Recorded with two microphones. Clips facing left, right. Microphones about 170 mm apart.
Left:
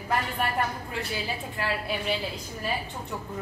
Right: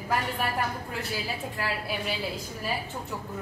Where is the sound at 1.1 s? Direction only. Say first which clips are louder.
Even; 5° right (ahead or behind).